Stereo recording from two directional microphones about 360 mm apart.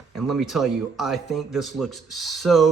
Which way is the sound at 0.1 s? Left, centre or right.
Centre.